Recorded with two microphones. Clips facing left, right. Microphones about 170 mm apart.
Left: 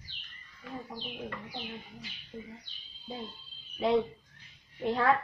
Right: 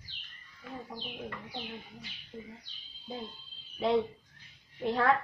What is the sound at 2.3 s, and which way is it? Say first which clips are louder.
Speech: left 1 dB; 10° right (ahead or behind).